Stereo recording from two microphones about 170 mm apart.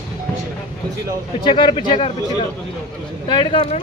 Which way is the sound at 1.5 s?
30° left (ahead or behind).